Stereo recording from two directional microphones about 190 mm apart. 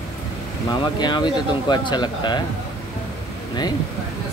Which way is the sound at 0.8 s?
25° left (ahead or behind).